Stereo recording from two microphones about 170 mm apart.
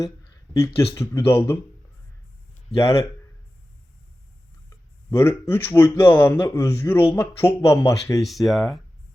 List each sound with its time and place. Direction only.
0.9 s speech: 15° left (ahead or behind)
2.7 s speech: 20° left (ahead or behind)
5.1 s speech: 15° left (ahead or behind)
8.2 s speech: centre (ahead or behind)